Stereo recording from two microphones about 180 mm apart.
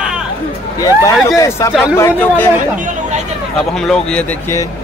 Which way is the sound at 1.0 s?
20° left (ahead or behind).